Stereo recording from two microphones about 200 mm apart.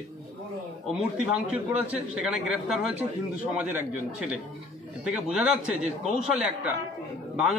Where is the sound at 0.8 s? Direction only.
5° right (ahead or behind).